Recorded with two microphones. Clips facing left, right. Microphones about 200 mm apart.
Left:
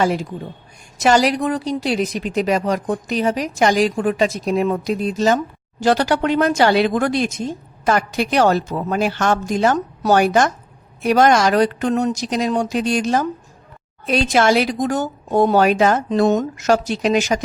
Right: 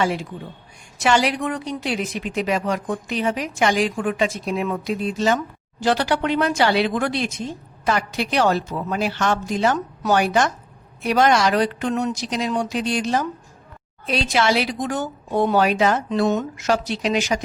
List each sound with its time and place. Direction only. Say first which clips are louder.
0.0 s a woman's voice: left 4 dB; 40° left (ahead or behind)